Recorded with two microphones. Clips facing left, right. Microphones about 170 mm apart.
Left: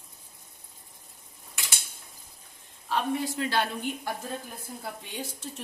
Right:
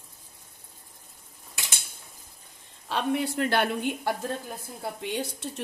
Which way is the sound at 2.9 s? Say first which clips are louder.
Right 2 dB; 65° right (ahead or behind).